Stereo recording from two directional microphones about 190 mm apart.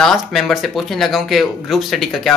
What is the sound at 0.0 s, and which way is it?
Speech, centre (ahead or behind).